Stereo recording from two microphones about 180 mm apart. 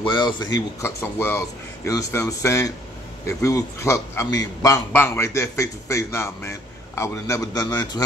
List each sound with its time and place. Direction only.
0.0 s a man's voice: 25° left (ahead or behind)